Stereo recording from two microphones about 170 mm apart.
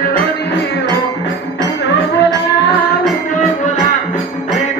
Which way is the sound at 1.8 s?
90° left.